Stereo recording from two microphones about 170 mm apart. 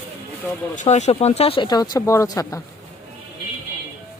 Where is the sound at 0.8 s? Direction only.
40° left (ahead or behind); by 2.6 s 20° left (ahead or behind).